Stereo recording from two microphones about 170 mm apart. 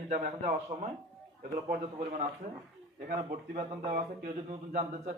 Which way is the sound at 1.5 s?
55° right (ahead or behind).